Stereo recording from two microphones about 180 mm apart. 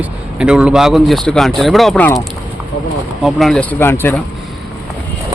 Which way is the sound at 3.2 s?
Centre (ahead or behind).